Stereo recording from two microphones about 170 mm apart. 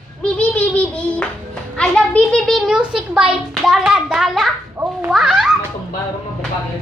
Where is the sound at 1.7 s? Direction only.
5° left (ahead or behind).